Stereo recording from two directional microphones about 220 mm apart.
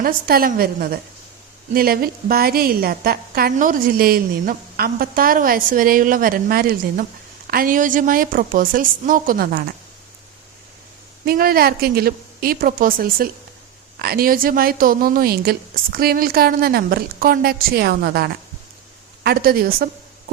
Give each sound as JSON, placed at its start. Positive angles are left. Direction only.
{"t": 0.0, "sound": "a woman's voice", "side_deg": -40}
{"t": 11.3, "sound": "a woman's voice", "side_deg": -45}